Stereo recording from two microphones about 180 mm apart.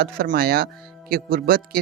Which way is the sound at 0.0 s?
55° right (ahead or behind).